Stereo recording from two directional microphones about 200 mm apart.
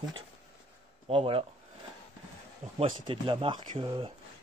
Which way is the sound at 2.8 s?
25° right (ahead or behind).